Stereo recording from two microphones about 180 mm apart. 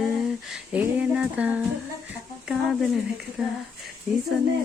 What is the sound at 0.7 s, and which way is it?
Speech, 5° right (ahead or behind).